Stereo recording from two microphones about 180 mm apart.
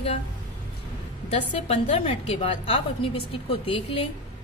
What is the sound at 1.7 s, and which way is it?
A woman's voice, 35° left (ahead or behind).